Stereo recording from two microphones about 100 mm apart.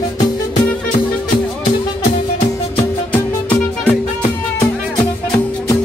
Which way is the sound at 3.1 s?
20° left (ahead or behind).